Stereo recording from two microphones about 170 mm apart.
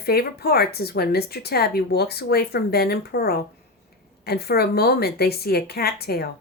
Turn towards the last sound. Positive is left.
turn(degrees=65)  # may be behind; listen again after turning